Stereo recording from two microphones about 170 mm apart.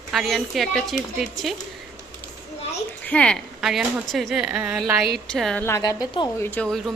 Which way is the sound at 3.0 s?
5° left (ahead or behind).